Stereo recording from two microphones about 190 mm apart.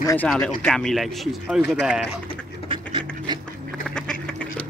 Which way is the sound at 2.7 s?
25° right (ahead or behind).